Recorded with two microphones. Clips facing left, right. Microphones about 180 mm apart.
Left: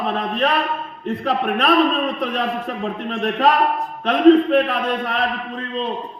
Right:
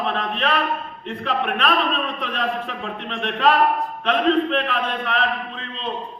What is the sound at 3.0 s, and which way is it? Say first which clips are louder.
A man's voice: left 2 dB; 40° left (ahead or behind).